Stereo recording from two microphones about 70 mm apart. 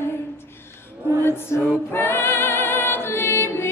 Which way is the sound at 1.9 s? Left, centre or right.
Left.